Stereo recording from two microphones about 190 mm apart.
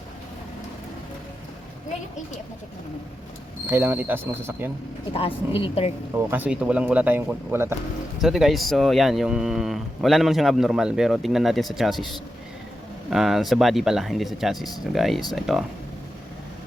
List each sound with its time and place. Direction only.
3.7 s speech: 10° right (ahead or behind)
5.5 s a woman's voice: 30° left (ahead or behind)
6.3 s speech: 5° right (ahead or behind)
8.2 s speech: centre (ahead or behind)